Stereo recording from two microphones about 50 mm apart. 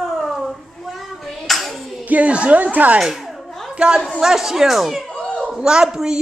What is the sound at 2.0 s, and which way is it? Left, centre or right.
Speech, right.